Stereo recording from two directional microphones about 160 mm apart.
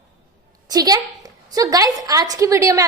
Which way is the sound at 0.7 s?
25° right (ahead or behind).